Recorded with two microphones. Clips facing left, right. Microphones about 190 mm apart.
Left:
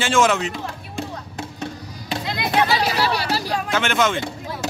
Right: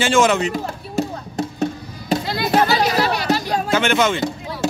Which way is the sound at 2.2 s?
35° right (ahead or behind).